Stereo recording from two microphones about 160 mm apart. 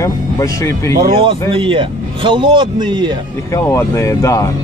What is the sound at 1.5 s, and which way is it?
Speech, 35° right (ahead or behind).